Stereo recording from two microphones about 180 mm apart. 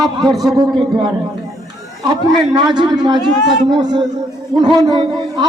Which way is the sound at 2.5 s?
25° right (ahead or behind).